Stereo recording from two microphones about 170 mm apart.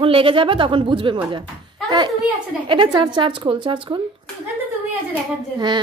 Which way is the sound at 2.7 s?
30° right (ahead or behind).